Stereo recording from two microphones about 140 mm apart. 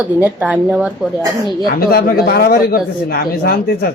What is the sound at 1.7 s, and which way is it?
Speech, 90° left.